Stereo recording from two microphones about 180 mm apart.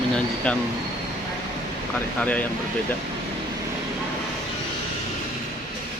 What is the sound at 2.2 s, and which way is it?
Speech, 10° left (ahead or behind).